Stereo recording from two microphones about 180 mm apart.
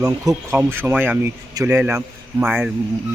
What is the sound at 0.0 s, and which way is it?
Speech, 15° right (ahead or behind).